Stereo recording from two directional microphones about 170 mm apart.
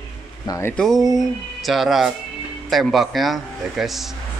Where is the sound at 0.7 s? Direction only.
Centre (ahead or behind).